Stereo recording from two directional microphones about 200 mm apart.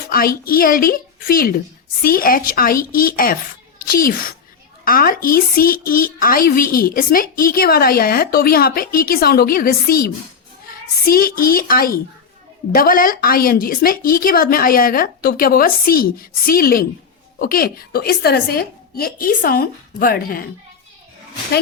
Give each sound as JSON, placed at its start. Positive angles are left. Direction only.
{"t": 0.1, "sound": "a woman's voice", "side_deg": 45}